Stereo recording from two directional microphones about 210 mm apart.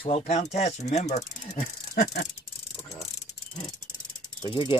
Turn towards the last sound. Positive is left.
turn(degrees=20)  # may be behind; listen again after turning